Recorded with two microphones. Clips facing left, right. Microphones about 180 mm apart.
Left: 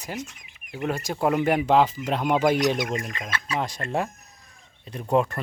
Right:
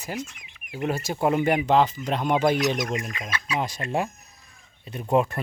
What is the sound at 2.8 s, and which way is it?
Speech, 30° left (ahead or behind).